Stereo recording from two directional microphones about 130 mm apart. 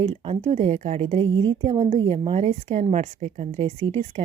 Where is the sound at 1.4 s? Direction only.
45° right (ahead or behind).